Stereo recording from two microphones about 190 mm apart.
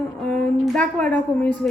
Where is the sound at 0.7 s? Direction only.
5° left (ahead or behind).